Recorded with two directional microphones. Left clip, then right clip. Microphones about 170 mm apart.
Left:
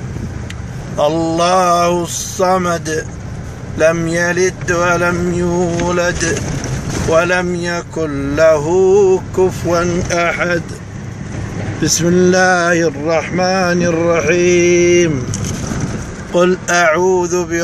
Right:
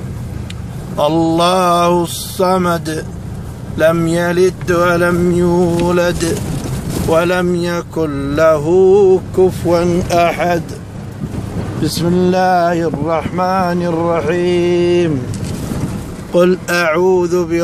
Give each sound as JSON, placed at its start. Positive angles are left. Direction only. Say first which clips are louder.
{"t": 0.9, "sound": "speech", "louder": "right 1 dB", "side_deg": -10}
{"t": 10.0, "sound": "speech", "louder": "right 2 dB", "side_deg": -20}
{"t": 12.0, "sound": "speech", "louder": "left 2 dB", "side_deg": -5}
{"t": 16.3, "sound": "speech", "louder": "even", "side_deg": -10}